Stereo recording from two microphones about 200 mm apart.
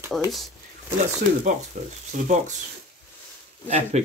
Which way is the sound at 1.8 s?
35° right (ahead or behind).